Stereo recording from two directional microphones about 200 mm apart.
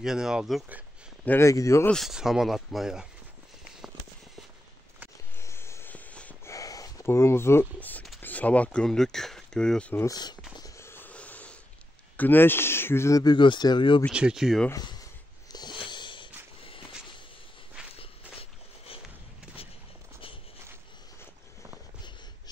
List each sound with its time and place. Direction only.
0.0 s speech: 5° right (ahead or behind)
1.2 s speech: 10° left (ahead or behind)
2.0 s speech: centre (ahead or behind)
5.4 s a sound: 15° left (ahead or behind)
8.2 s speech: 10° left (ahead or behind)
10.5 s wheeze: 15° left (ahead or behind)
12.2 s speech: 10° left (ahead or behind)
14.1 s speech: 5° right (ahead or behind)
14.7 s speech: 20° left (ahead or behind)
15.5 s a sound: 20° left (ahead or behind)
17.9 s walk: 30° left (ahead or behind)